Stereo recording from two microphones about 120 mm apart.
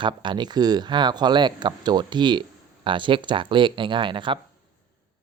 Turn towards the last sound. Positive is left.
turn(degrees=-45)  # may be behind; listen again after turning